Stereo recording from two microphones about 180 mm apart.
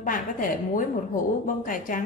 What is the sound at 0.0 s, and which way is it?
Speech, 45° left (ahead or behind).